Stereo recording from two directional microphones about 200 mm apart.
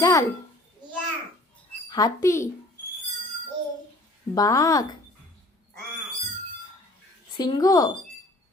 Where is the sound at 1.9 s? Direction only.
15° left (ahead or behind).